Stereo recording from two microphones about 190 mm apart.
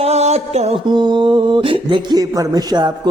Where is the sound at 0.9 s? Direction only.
25° right (ahead or behind).